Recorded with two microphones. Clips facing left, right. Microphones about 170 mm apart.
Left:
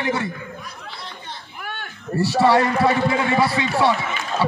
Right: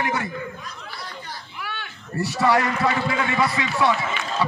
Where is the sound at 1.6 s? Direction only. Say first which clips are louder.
Left 2 dB; 50° left (ahead or behind).